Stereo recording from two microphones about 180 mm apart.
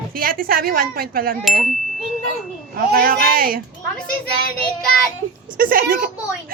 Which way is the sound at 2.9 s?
55° right (ahead or behind).